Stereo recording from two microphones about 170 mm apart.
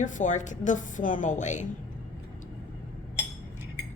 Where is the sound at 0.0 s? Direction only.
45° left (ahead or behind).